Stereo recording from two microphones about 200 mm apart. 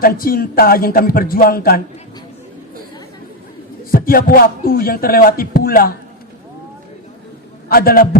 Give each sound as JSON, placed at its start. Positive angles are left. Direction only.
{"t": 0.0, "sound": "speech", "side_deg": 45}
{"t": 3.9, "sound": "speech", "side_deg": 45}
{"t": 7.7, "sound": "speech", "side_deg": 45}